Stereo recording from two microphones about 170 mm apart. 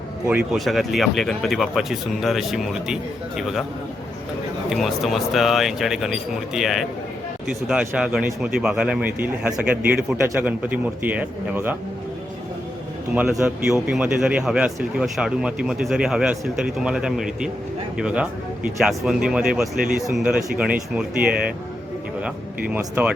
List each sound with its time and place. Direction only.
0.5 s speech: centre (ahead or behind)
4.7 s a man's voice: centre (ahead or behind)
13.4 s a man's voice: 5° right (ahead or behind)
22.7 s a man's voice: 10° right (ahead or behind)